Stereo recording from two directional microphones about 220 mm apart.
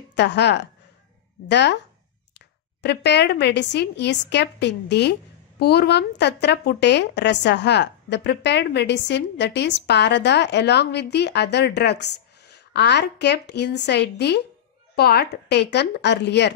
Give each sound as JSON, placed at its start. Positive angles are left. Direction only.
{"t": 0.1, "sound": "a woman's voice", "side_deg": 50}
{"t": 2.8, "sound": "a woman's voice", "side_deg": 50}